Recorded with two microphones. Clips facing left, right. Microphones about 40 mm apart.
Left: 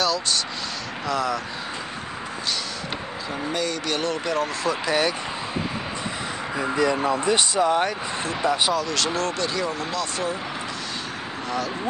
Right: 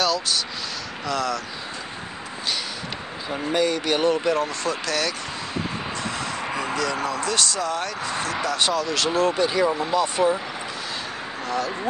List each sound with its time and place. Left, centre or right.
0.0 s vehicle: centre
1.0 s speech: centre
3.3 s speech: centre
4.8 s speech: centre
6.6 s speech: left
8.5 s speech: centre
8.8 s speech: centre
11.4 s speech: centre